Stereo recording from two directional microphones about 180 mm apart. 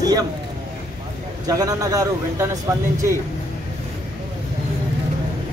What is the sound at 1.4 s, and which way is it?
A man's voice, 20° right (ahead or behind).